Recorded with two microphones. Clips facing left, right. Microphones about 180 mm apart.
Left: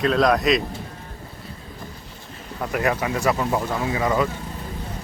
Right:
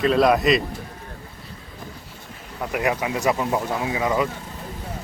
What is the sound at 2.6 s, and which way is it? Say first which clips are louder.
Speech: left 1 dB; 10° right (ahead or behind).